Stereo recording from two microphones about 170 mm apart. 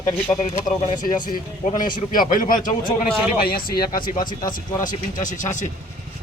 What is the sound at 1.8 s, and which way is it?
Speech, 55° left (ahead or behind).